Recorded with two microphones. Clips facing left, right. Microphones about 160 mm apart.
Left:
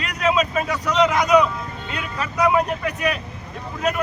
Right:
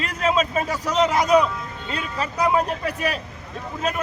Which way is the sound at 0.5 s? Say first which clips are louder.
Left 1 dB; 30° right (ahead or behind).